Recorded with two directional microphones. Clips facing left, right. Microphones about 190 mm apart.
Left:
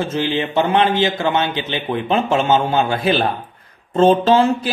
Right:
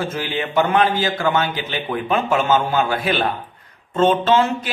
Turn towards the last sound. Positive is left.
turn(degrees=35)  # may be behind; listen again after turning